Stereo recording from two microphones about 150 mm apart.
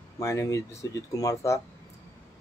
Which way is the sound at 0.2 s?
20° left (ahead or behind).